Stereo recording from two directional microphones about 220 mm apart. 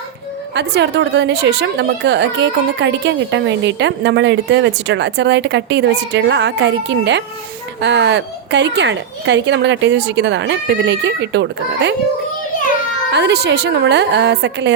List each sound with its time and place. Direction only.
0.5 s a woman's voice: 50° right (ahead or behind)
13.1 s a woman's voice: 50° right (ahead or behind)